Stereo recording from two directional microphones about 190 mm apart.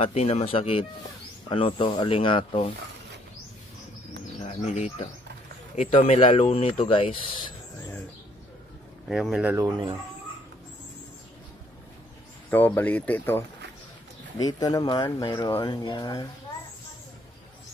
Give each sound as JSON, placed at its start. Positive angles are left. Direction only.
{"t": 0.0, "sound": "speech", "side_deg": 35}
{"t": 4.6, "sound": "a man's voice", "side_deg": 35}
{"t": 9.1, "sound": "speech", "side_deg": -5}
{"t": 9.7, "sound": "speech", "side_deg": -25}
{"t": 12.4, "sound": "speech", "side_deg": 10}
{"t": 14.4, "sound": "speech", "side_deg": 20}